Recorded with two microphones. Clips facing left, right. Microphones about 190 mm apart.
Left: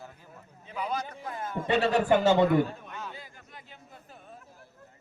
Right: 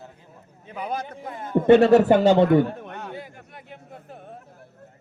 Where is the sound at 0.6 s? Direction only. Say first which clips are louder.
Right 3 dB; 55° right (ahead or behind).